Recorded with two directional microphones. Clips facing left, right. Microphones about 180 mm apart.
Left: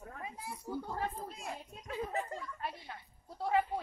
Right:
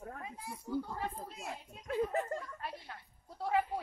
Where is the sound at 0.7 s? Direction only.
40° left (ahead or behind).